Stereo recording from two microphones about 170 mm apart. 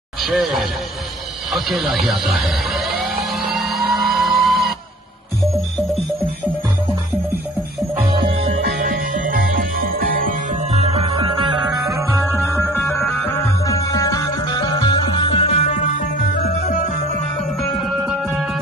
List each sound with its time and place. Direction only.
0.2 s speech: centre (ahead or behind)
1.5 s a sound: centre (ahead or behind)
8.8 s music: 50° right (ahead or behind)
10.7 s music: 35° right (ahead or behind)
12.4 s music: 10° left (ahead or behind); by 15.7 s 35° left (ahead or behind)
15.7 s music: 60° left (ahead or behind)
18.3 s music: 5° right (ahead or behind)